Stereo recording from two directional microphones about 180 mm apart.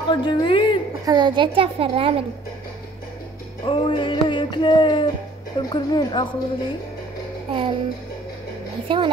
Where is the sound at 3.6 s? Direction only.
30° left (ahead or behind).